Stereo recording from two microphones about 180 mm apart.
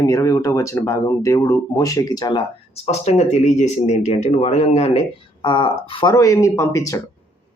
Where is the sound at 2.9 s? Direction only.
35° left (ahead or behind).